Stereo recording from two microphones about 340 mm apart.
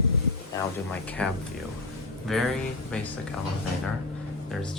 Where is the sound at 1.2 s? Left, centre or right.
Centre.